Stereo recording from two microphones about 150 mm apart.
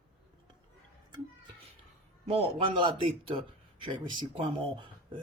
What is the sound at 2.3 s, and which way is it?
Speech, 40° right (ahead or behind).